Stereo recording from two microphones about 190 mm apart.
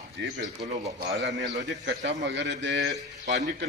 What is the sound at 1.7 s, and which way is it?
A man's voice, 70° right (ahead or behind).